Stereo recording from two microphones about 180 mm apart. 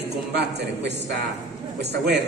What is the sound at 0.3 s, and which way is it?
A man's voice, 70° right (ahead or behind).